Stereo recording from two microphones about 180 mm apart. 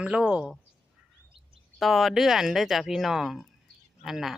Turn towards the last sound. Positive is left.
turn(degrees=0)  # may be behind; listen again after turning